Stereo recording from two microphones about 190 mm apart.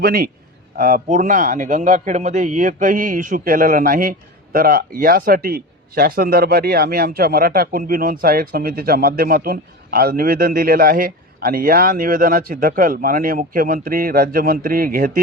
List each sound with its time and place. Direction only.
0.0 s speech: 50° right (ahead or behind)